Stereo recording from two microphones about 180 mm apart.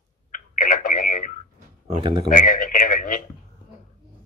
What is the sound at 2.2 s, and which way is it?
Speech, 45° left (ahead or behind).